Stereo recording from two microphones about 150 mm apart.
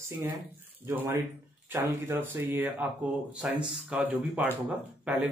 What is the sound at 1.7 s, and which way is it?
Speech, 15° right (ahead or behind).